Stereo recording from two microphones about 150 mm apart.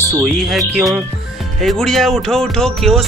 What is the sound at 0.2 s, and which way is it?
Speech, centre (ahead or behind).